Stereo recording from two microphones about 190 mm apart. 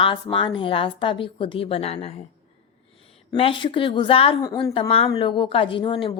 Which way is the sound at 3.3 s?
25° left (ahead or behind).